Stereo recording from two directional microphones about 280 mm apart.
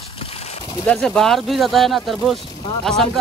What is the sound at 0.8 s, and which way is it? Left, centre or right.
Speech, centre.